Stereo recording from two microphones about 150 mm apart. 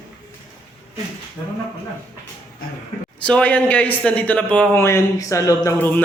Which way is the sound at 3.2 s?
10° left (ahead or behind).